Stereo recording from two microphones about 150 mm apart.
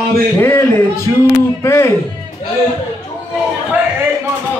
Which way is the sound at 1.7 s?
15° left (ahead or behind).